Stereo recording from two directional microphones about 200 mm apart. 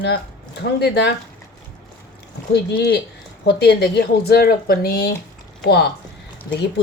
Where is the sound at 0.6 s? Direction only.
55° left (ahead or behind).